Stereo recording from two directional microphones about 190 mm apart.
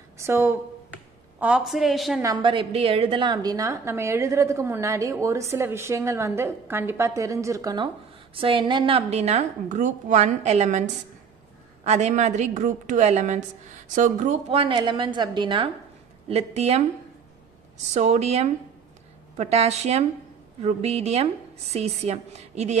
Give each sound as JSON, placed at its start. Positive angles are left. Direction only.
{"t": 0.2, "sound": "a woman's voice", "side_deg": -10}
{"t": 2.2, "sound": "a woman's voice", "side_deg": -25}
{"t": 17.9, "sound": "a woman's voice", "side_deg": -35}